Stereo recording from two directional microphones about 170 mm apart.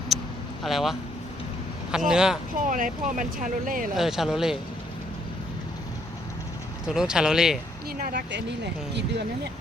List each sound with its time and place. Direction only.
0.1 s vehicle: centre (ahead or behind)
0.6 s speech: centre (ahead or behind)
2.6 s speech: 50° right (ahead or behind)
3.9 s speech: centre (ahead or behind)
6.8 s speech: 5° right (ahead or behind)
7.9 s speech: 60° right (ahead or behind)
8.9 s speech: 80° right